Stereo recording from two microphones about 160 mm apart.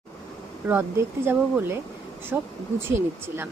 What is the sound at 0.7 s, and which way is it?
A woman's voice, 15° right (ahead or behind).